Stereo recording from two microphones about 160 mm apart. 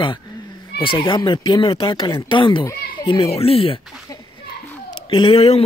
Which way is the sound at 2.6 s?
20° left (ahead or behind).